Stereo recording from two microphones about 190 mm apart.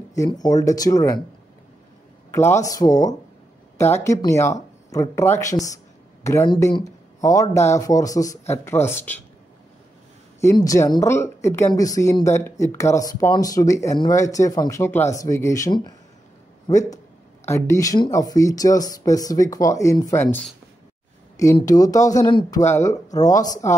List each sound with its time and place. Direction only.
0.1 s speech: 20° left (ahead or behind)
2.3 s speech: 15° left (ahead or behind)
10.4 s speech: 15° left (ahead or behind)
21.5 s speech: 20° left (ahead or behind)